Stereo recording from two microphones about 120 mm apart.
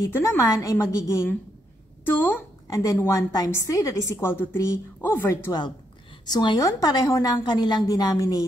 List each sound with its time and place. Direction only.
0.0 s a woman's voice: 20° left (ahead or behind)
6.2 s a woman's voice: 35° left (ahead or behind)
7.4 s a woman's voice: 40° left (ahead or behind)